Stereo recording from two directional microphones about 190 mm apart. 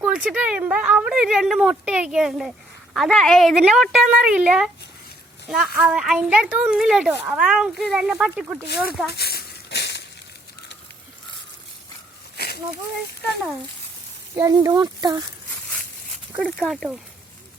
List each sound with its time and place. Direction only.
0.0 s a woman's voice: 5° right (ahead or behind)
9.1 s a sound: 55° left (ahead or behind)
14.3 s speech: 20° right (ahead or behind)
16.6 s a woman's voice: centre (ahead or behind)